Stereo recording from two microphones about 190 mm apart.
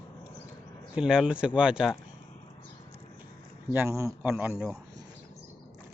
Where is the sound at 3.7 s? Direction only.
15° right (ahead or behind).